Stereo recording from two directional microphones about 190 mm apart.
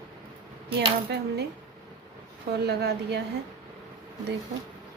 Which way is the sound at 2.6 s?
60° right (ahead or behind).